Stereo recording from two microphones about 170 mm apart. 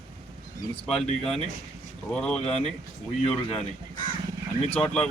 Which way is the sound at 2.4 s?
40° left (ahead or behind).